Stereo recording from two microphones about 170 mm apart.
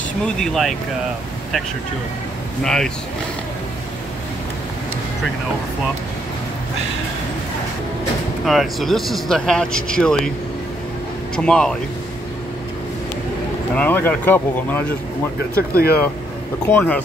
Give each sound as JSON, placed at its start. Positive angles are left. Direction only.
{"t": 0.2, "sound": "speech", "side_deg": 0}
{"t": 2.6, "sound": "speech", "side_deg": 5}
{"t": 8.5, "sound": "speech", "side_deg": 0}
{"t": 11.3, "sound": "speech", "side_deg": 5}
{"t": 13.7, "sound": "speech", "side_deg": 10}
{"t": 15.5, "sound": "speech", "side_deg": 65}
{"t": 16.6, "sound": "speech", "side_deg": 10}